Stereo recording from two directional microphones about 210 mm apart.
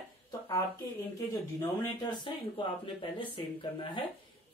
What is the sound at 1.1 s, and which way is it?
Speech, 15° left (ahead or behind).